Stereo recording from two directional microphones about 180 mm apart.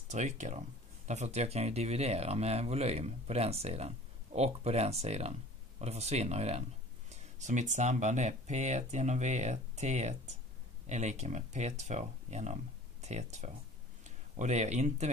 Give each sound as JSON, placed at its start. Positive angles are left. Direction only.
{"t": 0.1, "sound": "speech", "side_deg": -40}